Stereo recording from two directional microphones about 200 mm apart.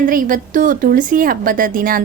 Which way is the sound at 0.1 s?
45° right (ahead or behind).